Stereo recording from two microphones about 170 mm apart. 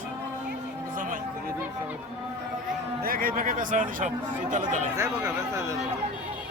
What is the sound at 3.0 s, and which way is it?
Speech, 60° right (ahead or behind).